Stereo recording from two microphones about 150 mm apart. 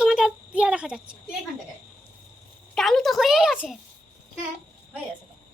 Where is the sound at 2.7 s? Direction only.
Centre (ahead or behind).